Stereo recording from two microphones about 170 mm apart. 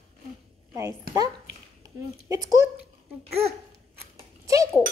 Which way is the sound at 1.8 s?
20° right (ahead or behind).